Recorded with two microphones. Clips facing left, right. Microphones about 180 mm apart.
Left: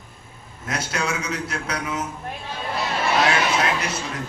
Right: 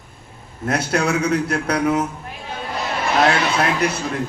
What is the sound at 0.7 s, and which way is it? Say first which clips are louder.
A man's voice: right 7 dB; 60° right (ahead or behind).